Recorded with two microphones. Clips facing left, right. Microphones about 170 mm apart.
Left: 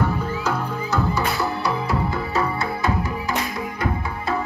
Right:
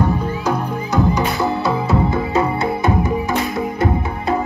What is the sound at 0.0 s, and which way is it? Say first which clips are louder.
Music: right 4 dB; 15° right (ahead or behind).